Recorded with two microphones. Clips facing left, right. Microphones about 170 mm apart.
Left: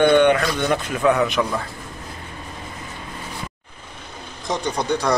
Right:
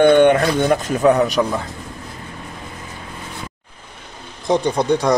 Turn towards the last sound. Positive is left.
turn(degrees=-25)  # may be behind; listen again after turning